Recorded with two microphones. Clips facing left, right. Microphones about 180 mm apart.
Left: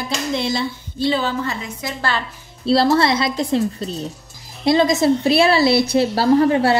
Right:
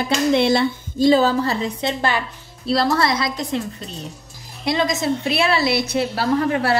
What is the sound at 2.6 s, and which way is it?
A woman's voice, 30° left (ahead or behind).